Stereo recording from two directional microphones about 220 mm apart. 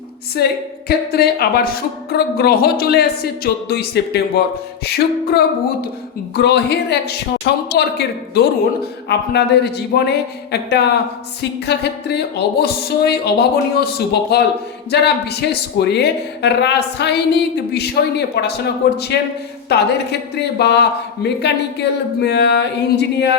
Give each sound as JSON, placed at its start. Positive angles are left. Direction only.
{"t": 0.4, "sound": "speech", "side_deg": 45}
{"t": 6.3, "sound": "speech", "side_deg": 50}